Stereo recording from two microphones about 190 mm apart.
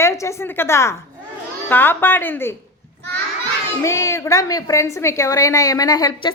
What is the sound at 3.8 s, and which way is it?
A woman's voice, 15° left (ahead or behind).